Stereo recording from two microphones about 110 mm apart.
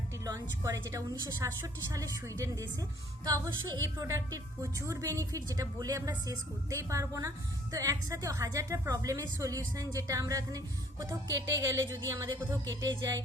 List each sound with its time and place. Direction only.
0.3 s a woman's voice: 30° right (ahead or behind)
11.3 s music: 30° right (ahead or behind)